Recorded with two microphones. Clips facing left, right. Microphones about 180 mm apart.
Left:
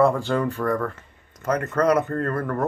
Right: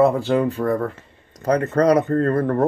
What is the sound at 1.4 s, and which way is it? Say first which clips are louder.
Speech: right 4 dB; 35° right (ahead or behind).